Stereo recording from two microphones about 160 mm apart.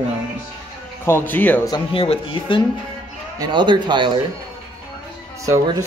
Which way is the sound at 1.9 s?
35° left (ahead or behind).